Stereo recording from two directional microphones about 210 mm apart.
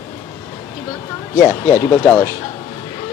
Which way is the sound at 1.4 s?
35° left (ahead or behind).